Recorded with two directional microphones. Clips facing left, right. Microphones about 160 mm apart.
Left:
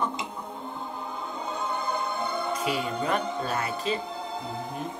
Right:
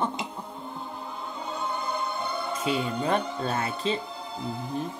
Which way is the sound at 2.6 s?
30° right (ahead or behind).